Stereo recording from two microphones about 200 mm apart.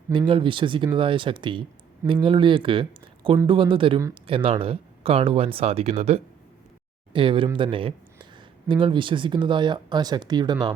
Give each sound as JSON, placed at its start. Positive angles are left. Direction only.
{"t": 0.1, "sound": "speech", "side_deg": -25}